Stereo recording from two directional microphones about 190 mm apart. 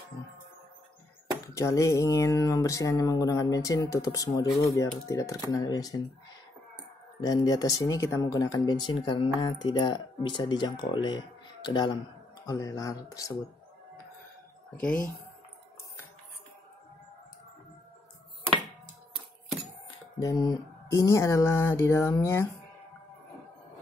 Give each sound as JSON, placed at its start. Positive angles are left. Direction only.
{"t": 1.5, "sound": "speech", "side_deg": 15}
{"t": 7.2, "sound": "speech", "side_deg": 20}
{"t": 14.8, "sound": "speech", "side_deg": 5}
{"t": 20.2, "sound": "speech", "side_deg": 20}